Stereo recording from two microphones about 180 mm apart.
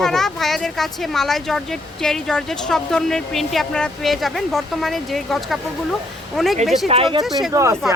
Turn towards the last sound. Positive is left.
turn(degrees=-15)  # may be behind; listen again after turning